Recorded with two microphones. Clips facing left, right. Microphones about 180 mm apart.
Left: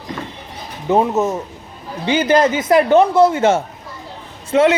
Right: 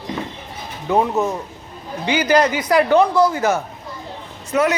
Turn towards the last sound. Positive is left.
turn(degrees=30)  # may be behind; listen again after turning